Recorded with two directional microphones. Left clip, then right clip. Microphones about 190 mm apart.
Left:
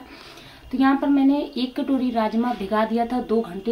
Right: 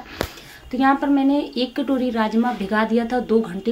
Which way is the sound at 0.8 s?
15° right (ahead or behind).